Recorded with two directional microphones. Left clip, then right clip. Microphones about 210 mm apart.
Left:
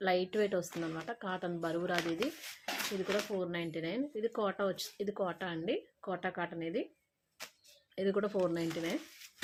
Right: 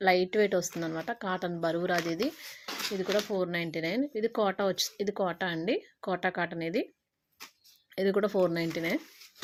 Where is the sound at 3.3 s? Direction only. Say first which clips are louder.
Right 6 dB; 40° right (ahead or behind).